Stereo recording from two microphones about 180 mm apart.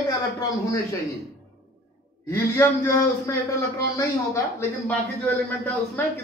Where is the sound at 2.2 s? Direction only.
15° left (ahead or behind).